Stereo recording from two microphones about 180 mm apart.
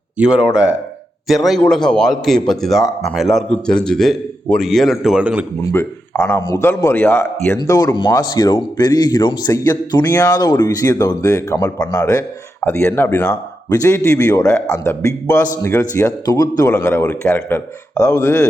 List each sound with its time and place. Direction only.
0.2 s a man's voice: 5° right (ahead or behind)
5.7 s a man's voice: 10° left (ahead or behind)